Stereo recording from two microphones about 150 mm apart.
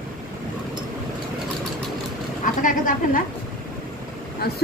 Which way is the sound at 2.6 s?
65° left (ahead or behind).